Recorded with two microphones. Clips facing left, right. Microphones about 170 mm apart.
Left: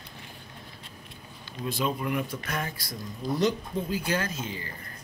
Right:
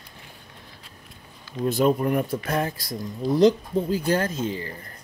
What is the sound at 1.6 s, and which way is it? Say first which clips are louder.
Speech: right 9 dB; 40° right (ahead or behind).